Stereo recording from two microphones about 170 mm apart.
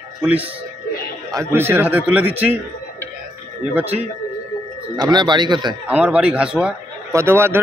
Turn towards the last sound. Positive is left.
turn(degrees=-15)  # may be behind; listen again after turning